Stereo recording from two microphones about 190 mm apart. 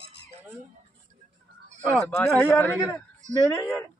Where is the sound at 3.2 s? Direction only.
40° right (ahead or behind).